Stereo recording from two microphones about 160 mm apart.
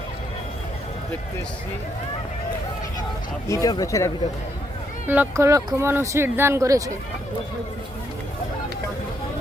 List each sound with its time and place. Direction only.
3.4 s speech: 20° left (ahead or behind)
5.0 s speech: 10° right (ahead or behind)